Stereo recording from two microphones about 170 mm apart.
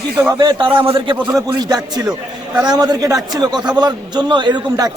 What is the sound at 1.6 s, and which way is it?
A man's voice, 25° right (ahead or behind).